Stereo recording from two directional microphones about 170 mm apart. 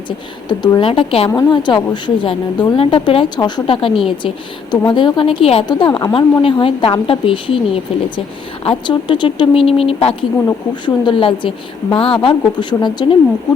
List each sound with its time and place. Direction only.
0.4 s a woman's voice: 25° left (ahead or behind)
1.3 s a woman's voice: 25° left (ahead or behind)